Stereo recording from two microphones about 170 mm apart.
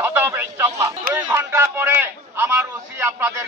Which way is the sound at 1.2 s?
15° right (ahead or behind).